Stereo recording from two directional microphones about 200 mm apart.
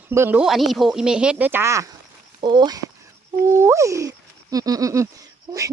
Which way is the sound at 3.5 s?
15° right (ahead or behind).